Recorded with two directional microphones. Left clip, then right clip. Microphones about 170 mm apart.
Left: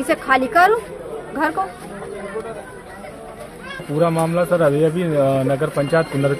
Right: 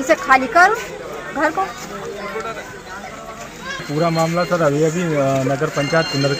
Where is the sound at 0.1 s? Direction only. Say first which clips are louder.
Right 3 dB; 35° left (ahead or behind).